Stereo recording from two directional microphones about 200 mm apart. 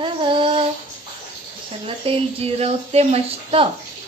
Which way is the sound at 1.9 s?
30° right (ahead or behind).